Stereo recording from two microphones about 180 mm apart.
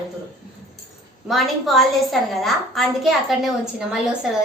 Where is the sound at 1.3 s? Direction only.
Centre (ahead or behind).